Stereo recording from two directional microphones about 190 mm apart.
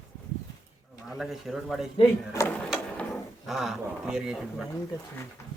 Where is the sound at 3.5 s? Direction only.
Centre (ahead or behind).